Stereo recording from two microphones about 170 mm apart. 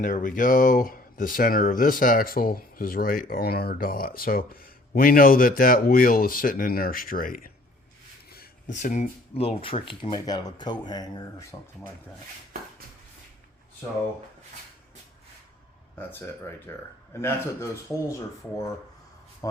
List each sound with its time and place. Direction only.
0.0 s speech: 50° left (ahead or behind)
8.3 s a sound: 65° left (ahead or behind)
8.7 s speech: 45° left (ahead or behind); by 11.7 s 20° left (ahead or behind)
16.0 s speech: 15° left (ahead or behind)